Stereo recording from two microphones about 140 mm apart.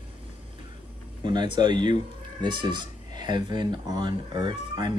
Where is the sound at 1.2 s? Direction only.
35° right (ahead or behind).